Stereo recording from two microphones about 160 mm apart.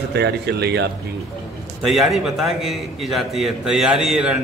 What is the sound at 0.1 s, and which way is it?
Speech, 90° right.